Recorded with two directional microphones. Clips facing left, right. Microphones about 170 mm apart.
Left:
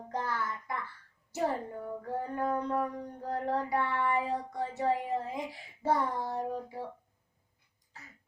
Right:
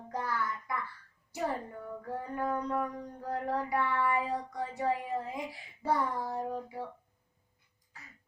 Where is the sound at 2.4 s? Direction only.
25° left (ahead or behind).